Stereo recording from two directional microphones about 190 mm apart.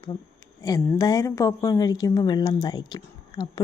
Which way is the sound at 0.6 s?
20° left (ahead or behind).